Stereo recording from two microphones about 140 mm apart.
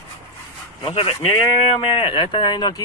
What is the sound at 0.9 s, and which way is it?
Speech, 40° left (ahead or behind).